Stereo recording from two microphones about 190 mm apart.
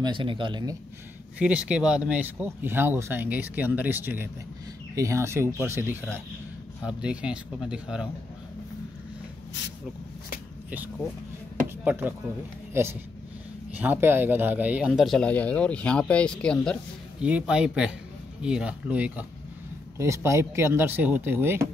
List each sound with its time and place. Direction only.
0.0 s speech: 25° right (ahead or behind)
1.4 s speech: 5° right (ahead or behind)
11.8 s speech: 10° right (ahead or behind)
13.7 s speech: 10° right (ahead or behind)
17.2 s speech: 5° right (ahead or behind)